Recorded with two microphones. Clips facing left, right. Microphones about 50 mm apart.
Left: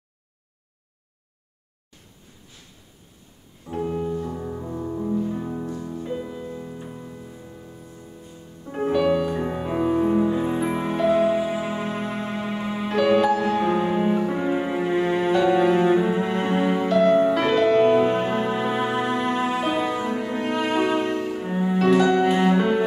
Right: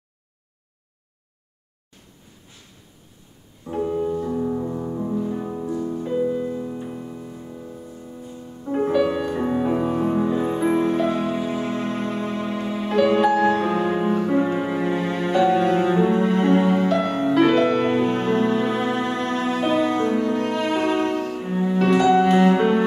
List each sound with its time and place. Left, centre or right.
3.7 s music: centre
5.8 s music: right
6.0 s music: centre
12.9 s music: centre
18.0 s music: centre